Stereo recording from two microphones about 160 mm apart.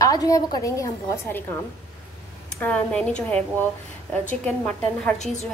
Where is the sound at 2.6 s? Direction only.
5° left (ahead or behind).